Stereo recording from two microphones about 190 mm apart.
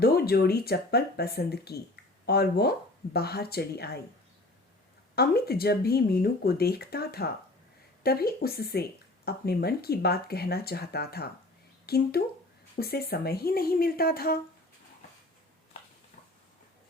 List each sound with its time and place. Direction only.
0.0 s speech: 55° left (ahead or behind)
5.1 s speech: 55° left (ahead or behind)